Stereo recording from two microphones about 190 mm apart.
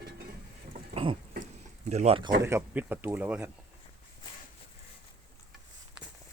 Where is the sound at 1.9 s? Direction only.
35° right (ahead or behind).